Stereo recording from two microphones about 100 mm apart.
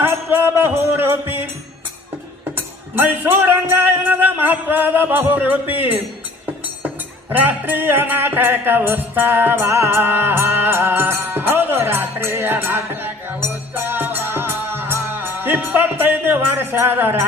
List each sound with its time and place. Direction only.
0.0 s music: 25° right (ahead or behind)
2.9 s music: 20° right (ahead or behind)
7.3 s music: 20° right (ahead or behind)